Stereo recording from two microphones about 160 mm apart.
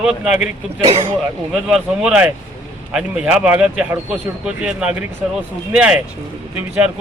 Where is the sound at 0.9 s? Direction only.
40° right (ahead or behind).